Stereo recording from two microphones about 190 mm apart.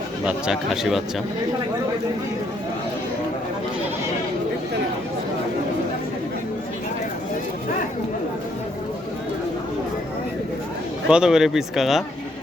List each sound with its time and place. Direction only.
0.3 s speech: 5° right (ahead or behind)
11.1 s speech: 5° right (ahead or behind)